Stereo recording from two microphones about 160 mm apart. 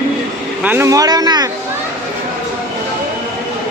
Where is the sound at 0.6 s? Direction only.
15° right (ahead or behind).